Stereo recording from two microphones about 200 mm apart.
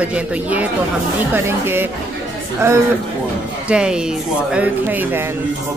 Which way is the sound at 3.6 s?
5° right (ahead or behind).